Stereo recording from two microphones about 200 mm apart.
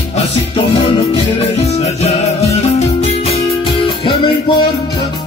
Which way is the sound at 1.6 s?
35° left (ahead or behind).